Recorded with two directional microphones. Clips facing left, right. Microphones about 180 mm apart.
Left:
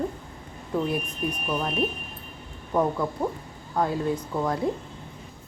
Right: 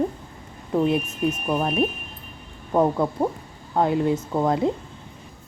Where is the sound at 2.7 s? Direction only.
25° right (ahead or behind).